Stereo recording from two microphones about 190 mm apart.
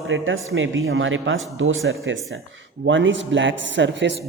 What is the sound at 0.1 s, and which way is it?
A man's voice, 90° right.